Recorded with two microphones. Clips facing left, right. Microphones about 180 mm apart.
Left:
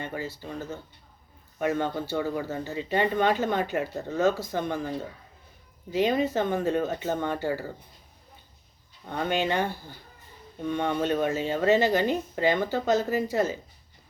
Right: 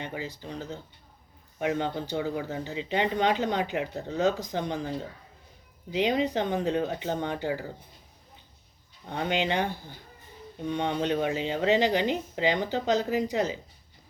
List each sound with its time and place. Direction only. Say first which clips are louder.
0.0 s speech: left 2 dB; 15° right (ahead or behind)
1.6 s speech: left 1 dB; 15° right (ahead or behind)
5.9 s speech: left 1 dB; 15° right (ahead or behind)
9.0 s speech: left 1 dB; 15° right (ahead or behind)